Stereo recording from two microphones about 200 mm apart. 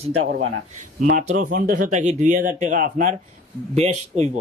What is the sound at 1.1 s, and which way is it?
Speech, 40° right (ahead or behind).